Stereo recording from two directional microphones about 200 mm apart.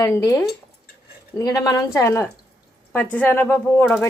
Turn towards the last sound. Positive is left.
turn(degrees=5)  # may be behind; listen again after turning